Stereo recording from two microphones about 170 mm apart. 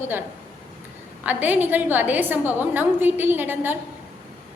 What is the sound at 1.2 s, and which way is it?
A woman's voice, 10° right (ahead or behind).